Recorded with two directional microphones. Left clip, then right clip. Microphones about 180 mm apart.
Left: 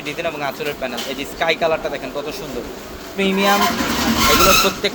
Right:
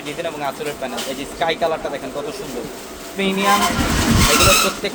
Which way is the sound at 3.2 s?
40° left (ahead or behind).